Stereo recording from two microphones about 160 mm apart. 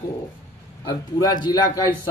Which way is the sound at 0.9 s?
25° left (ahead or behind).